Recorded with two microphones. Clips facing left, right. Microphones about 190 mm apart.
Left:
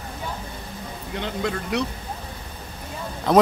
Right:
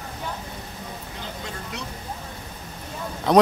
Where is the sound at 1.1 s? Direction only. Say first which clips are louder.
Left 12 dB; 70° left (ahead or behind).